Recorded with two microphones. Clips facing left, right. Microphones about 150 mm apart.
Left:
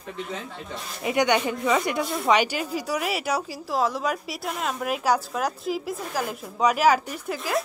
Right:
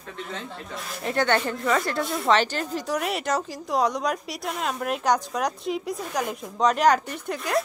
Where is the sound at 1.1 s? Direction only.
15° left (ahead or behind).